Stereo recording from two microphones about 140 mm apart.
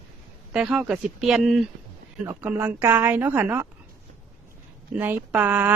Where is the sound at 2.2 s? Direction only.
15° right (ahead or behind).